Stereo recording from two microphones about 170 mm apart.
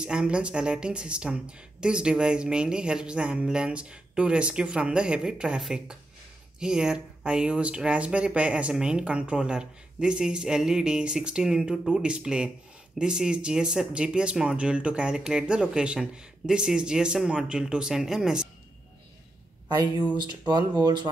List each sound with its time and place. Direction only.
0.0 s speech: 5° right (ahead or behind)
20.1 s speech: 25° right (ahead or behind)